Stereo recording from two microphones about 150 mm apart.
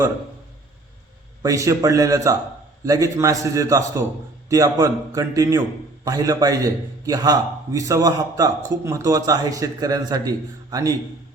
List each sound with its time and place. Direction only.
1.4 s a man's voice: 20° right (ahead or behind)